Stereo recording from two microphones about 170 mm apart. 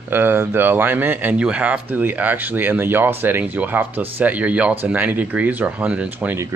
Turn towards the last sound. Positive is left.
turn(degrees=-10)  # may be behind; listen again after turning